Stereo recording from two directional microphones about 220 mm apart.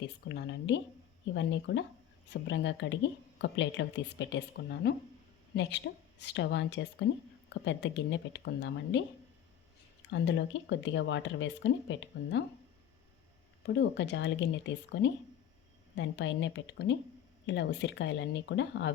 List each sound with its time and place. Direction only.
0.0 s speech: 50° left (ahead or behind)
10.1 s speech: 55° left (ahead or behind)
13.7 s speech: 50° left (ahead or behind)